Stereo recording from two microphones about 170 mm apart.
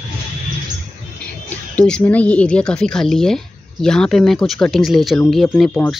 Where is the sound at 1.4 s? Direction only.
5° left (ahead or behind).